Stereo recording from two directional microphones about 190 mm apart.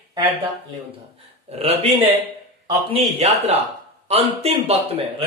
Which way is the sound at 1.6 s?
30° right (ahead or behind).